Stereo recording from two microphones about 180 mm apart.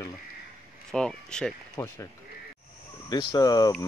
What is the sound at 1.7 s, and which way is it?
Speech, 15° left (ahead or behind).